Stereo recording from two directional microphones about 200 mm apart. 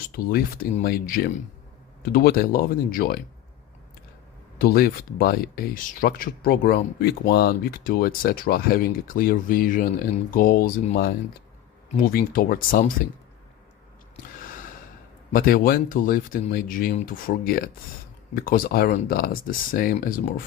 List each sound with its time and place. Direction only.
0.3 s speech: 50° left (ahead or behind)
4.5 s speech: 45° left (ahead or behind)
12.1 s speech: 45° left (ahead or behind)
15.3 s speech: 45° left (ahead or behind)